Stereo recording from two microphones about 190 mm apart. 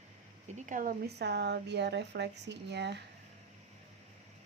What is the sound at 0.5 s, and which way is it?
Speech, 45° right (ahead or behind).